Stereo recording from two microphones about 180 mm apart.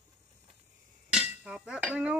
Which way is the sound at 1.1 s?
5° right (ahead or behind).